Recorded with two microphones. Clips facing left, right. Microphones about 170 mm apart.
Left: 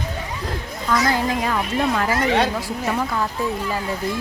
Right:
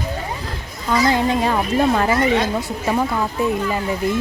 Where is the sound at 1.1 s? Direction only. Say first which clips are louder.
Right 4 dB; 25° right (ahead or behind).